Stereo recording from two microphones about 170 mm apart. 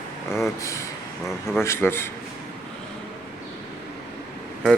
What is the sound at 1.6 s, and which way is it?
Speech, 15° left (ahead or behind).